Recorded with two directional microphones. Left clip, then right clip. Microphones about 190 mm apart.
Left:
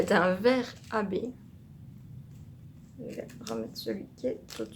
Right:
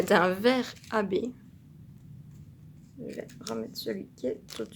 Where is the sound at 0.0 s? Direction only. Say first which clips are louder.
Right 1 dB; 50° right (ahead or behind).